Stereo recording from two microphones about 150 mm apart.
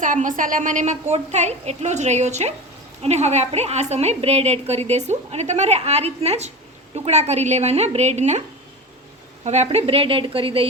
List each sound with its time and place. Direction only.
0.0 s a woman's voice: 60° right (ahead or behind)
9.4 s a woman's voice: 50° right (ahead or behind)